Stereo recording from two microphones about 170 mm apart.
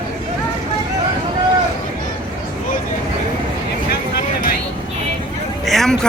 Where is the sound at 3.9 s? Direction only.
60° left (ahead or behind).